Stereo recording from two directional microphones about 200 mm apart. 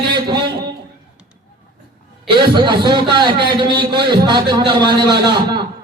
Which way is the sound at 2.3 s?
20° right (ahead or behind).